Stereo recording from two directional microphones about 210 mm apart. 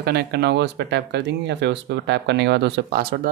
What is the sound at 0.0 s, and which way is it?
Speech, 50° right (ahead or behind).